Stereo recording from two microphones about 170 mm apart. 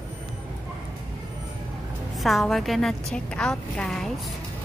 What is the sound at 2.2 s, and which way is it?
A woman's voice, centre (ahead or behind).